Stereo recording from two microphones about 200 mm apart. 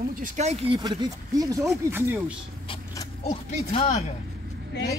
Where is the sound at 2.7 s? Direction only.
30° left (ahead or behind).